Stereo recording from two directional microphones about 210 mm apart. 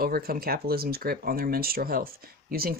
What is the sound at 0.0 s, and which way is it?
Speech, 45° right (ahead or behind).